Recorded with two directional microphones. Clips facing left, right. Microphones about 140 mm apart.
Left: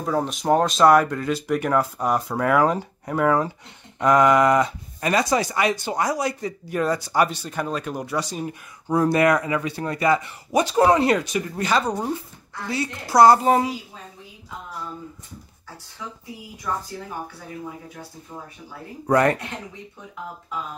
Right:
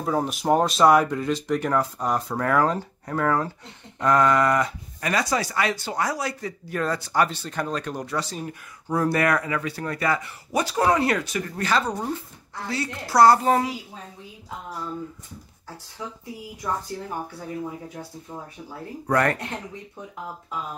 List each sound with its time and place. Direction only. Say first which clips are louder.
0.0 s speech: left 1 dB; 5° right (ahead or behind); by 13.7 s 20° left (ahead or behind)
18.3 s speech: right 1 dB; 20° right (ahead or behind)
19.0 s speech: left 4 dB; 20° left (ahead or behind)